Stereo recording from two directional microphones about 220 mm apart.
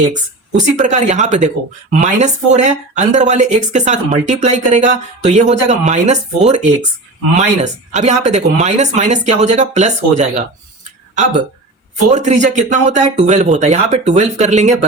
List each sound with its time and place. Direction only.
0.1 s a woman's voice: 35° right (ahead or behind)